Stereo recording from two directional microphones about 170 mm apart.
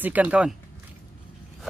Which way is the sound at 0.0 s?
10° right (ahead or behind).